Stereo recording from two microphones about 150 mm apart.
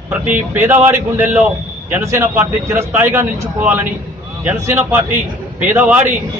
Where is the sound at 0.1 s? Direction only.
10° right (ahead or behind).